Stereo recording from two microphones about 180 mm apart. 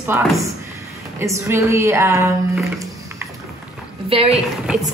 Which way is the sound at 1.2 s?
15° right (ahead or behind).